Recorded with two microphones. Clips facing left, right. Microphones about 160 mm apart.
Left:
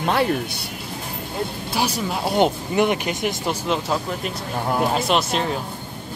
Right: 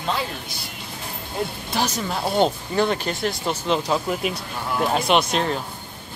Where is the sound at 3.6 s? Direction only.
Centre (ahead or behind).